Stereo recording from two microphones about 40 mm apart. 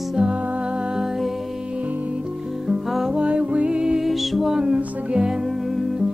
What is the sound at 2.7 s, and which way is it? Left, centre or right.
Music, centre.